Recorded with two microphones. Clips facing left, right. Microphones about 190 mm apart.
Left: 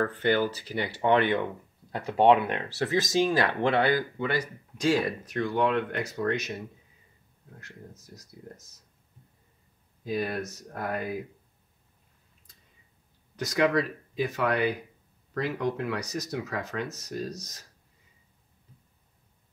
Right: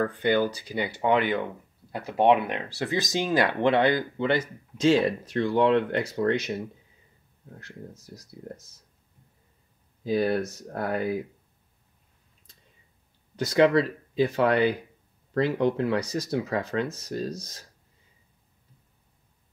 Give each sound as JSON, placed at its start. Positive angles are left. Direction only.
{"t": 0.0, "sound": "speech", "side_deg": -15}
{"t": 10.0, "sound": "speech", "side_deg": -30}
{"t": 13.4, "sound": "speech", "side_deg": -30}